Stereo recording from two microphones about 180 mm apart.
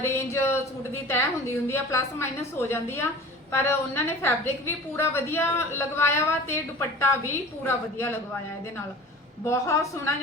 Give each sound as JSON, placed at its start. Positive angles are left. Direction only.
{"t": 0.0, "sound": "a sound", "side_deg": 15}
{"t": 1.6, "sound": "a woman's voice", "side_deg": 15}
{"t": 9.5, "sound": "a woman's voice", "side_deg": 15}